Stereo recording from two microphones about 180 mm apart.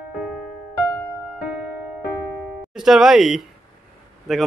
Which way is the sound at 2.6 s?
5° right (ahead or behind).